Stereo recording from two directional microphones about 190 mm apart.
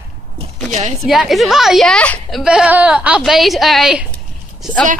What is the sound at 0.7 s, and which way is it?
Speech, 40° right (ahead or behind).